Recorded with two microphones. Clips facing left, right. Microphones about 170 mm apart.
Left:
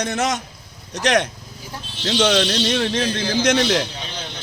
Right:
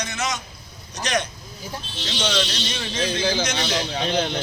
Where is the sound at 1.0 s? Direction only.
90° left.